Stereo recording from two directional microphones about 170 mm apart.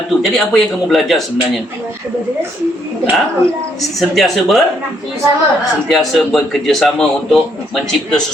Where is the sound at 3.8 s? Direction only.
Centre (ahead or behind).